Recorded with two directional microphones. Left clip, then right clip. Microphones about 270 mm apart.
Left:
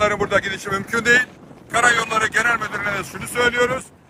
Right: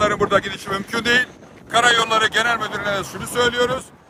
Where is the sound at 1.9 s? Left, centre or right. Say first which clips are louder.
Right 2 dB; centre.